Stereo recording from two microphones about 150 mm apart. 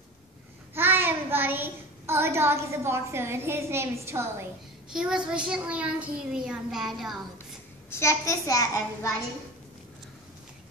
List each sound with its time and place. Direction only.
0.7 s a child's voice: 15° right (ahead or behind)
4.9 s a child's voice: 5° right (ahead or behind)
7.9 s a child's voice: 20° left (ahead or behind)